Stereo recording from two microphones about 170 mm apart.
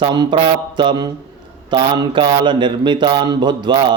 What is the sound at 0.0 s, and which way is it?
Speech, 25° right (ahead or behind).